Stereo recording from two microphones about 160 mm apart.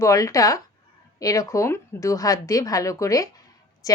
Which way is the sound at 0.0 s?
20° left (ahead or behind).